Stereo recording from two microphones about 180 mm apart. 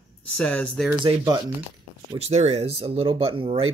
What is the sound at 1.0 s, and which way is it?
Speech, 25° right (ahead or behind).